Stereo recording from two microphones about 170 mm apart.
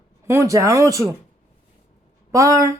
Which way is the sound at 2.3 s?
20° right (ahead or behind).